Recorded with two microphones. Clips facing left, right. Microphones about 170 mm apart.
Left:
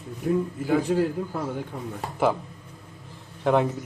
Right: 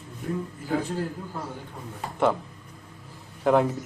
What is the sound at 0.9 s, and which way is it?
Speech, 90° left.